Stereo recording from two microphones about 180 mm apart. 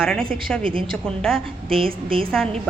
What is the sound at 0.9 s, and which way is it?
A woman's voice, 5° left (ahead or behind).